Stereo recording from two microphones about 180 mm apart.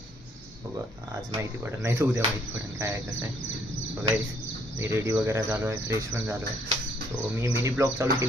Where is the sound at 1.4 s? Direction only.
10° right (ahead or behind).